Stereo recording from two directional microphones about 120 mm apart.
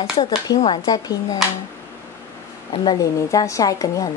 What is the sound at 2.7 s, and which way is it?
Speech, 40° left (ahead or behind).